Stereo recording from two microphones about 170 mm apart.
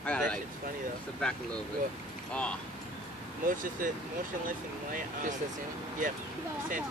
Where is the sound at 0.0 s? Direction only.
5° left (ahead or behind).